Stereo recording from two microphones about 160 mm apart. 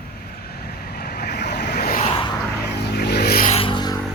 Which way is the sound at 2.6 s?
90° left.